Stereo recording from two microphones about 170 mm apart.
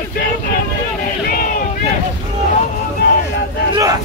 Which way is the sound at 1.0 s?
55° left (ahead or behind).